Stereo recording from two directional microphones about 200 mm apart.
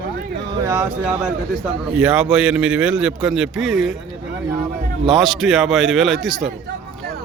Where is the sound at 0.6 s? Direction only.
10° right (ahead or behind).